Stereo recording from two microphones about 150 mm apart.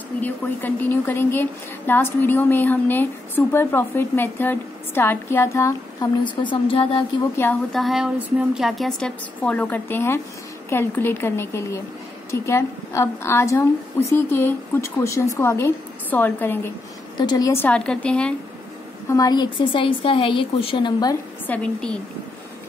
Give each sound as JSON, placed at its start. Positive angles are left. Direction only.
{"t": 0.2, "sound": "a woman's voice", "side_deg": 10}
{"t": 6.2, "sound": "a woman's voice", "side_deg": 30}
{"t": 7.7, "sound": "a woman's voice", "side_deg": 0}
{"t": 17.2, "sound": "a woman's voice", "side_deg": 30}
{"t": 17.5, "sound": "a woman's voice", "side_deg": 10}
{"t": 19.0, "sound": "a woman's voice", "side_deg": 25}
{"t": 21.5, "sound": "a woman's voice", "side_deg": 10}